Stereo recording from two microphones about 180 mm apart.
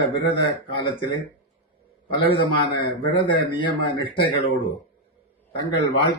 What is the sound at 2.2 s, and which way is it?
A man's voice, 25° left (ahead or behind).